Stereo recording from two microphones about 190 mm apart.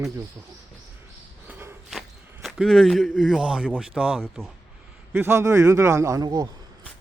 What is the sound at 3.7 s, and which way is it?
A man's voice, 5° right (ahead or behind).